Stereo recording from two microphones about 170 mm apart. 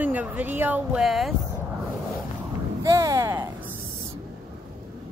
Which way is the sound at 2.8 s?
20° right (ahead or behind).